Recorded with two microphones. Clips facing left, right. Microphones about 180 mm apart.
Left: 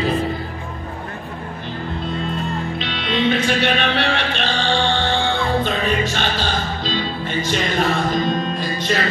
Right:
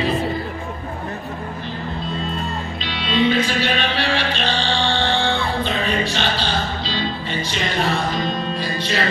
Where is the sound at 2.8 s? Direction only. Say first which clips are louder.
Right 4 dB; 60° left (ahead or behind).